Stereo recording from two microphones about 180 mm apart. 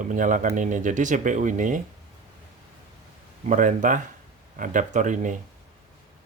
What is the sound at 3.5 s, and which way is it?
Speech, 45° right (ahead or behind).